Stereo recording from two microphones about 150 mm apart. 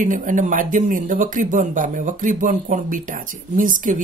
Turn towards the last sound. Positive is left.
turn(degrees=-60)  # may be behind; listen again after turning